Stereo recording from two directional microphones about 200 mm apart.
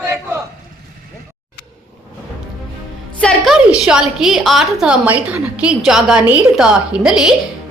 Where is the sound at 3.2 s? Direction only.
Centre (ahead or behind).